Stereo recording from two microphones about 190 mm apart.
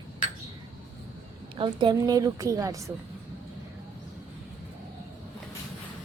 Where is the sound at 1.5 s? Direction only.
25° right (ahead or behind).